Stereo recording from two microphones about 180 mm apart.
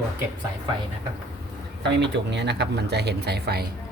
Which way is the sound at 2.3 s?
70° right (ahead or behind).